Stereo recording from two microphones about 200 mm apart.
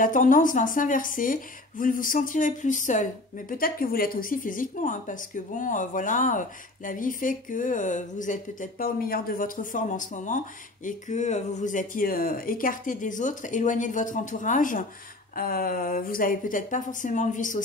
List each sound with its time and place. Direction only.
0.0 s speech: 40° left (ahead or behind)